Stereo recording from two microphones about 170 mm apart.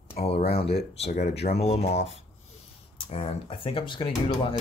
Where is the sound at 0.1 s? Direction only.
35° left (ahead or behind).